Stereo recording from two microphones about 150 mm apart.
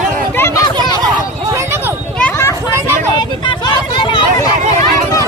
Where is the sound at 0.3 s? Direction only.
20° left (ahead or behind).